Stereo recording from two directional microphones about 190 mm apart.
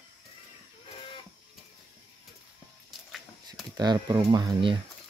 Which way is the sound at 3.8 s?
20° right (ahead or behind).